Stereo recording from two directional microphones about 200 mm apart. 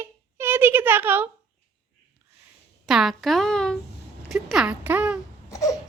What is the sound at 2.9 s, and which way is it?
A child's voice, centre (ahead or behind).